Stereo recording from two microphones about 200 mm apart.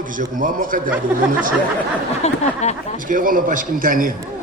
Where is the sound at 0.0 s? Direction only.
40° right (ahead or behind).